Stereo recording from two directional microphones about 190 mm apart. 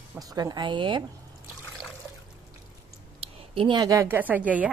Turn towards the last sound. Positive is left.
turn(degrees=-10)  # may be behind; listen again after turning